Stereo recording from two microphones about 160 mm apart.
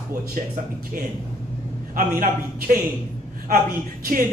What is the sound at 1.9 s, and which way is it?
Speech, 65° right (ahead or behind).